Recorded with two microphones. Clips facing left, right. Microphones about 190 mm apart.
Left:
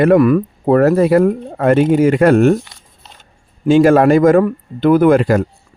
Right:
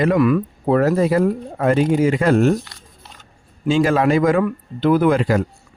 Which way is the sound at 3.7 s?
55° left (ahead or behind).